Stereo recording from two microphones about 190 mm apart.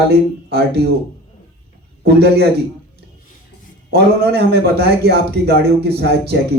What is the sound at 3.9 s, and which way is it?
Speech, 60° right (ahead or behind).